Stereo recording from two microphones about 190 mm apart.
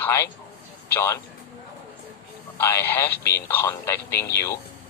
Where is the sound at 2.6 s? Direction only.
15° left (ahead or behind).